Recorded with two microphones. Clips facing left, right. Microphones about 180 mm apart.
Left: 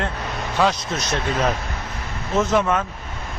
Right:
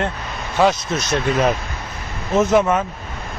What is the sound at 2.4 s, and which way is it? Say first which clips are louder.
Speech: right 4 dB; 20° right (ahead or behind).